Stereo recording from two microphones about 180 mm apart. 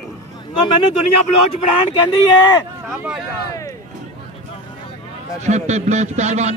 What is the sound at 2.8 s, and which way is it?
Speech, centre (ahead or behind).